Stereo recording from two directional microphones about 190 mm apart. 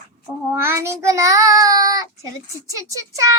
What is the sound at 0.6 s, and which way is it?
Child singing, 15° right (ahead or behind).